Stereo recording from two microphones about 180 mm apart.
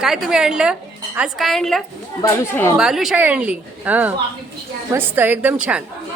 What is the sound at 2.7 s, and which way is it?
A woman's voice, centre (ahead or behind).